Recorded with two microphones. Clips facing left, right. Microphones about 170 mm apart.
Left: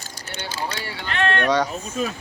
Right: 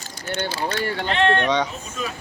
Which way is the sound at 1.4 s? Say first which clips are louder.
Left 1 dB; 10° left (ahead or behind).